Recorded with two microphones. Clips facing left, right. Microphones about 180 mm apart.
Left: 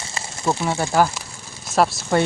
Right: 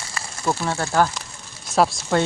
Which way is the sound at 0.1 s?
15° left (ahead or behind).